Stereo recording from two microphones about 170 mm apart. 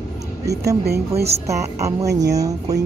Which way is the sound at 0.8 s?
70° right (ahead or behind).